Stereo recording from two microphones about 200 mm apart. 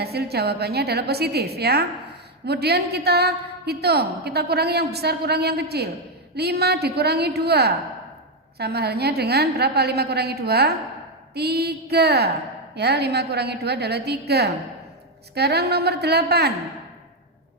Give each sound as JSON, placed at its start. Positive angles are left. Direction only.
{"t": 0.0, "sound": "a woman's voice", "side_deg": -55}